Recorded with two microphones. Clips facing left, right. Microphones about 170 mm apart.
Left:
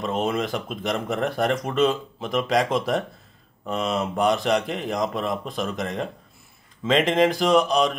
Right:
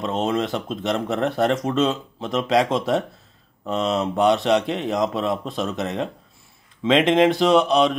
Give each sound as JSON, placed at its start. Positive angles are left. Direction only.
{"t": 0.0, "sound": "speech", "side_deg": 0}